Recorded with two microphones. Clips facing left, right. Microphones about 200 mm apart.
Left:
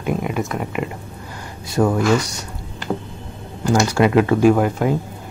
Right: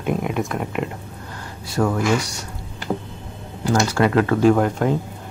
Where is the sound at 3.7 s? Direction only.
15° left (ahead or behind).